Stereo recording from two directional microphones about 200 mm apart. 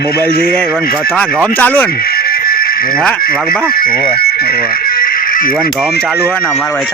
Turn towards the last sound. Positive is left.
turn(degrees=45)  # may be behind; listen again after turning